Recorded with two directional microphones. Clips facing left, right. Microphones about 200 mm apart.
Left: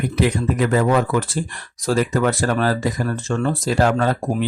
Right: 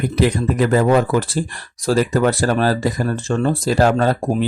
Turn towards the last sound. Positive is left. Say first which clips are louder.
# right 3 dB
turn(degrees=-30)  # may be behind; listen again after turning